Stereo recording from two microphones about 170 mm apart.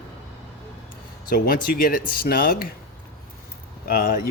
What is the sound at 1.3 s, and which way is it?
Speech, 55° left (ahead or behind).